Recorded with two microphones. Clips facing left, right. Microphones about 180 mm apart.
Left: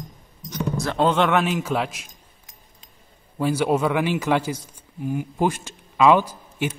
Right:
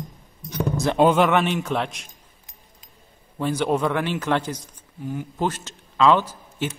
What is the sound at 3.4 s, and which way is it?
A man's voice, 10° left (ahead or behind).